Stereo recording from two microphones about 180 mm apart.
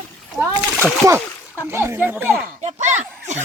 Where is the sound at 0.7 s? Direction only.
10° right (ahead or behind).